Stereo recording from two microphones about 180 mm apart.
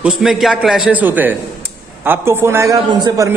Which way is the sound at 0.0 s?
Centre (ahead or behind).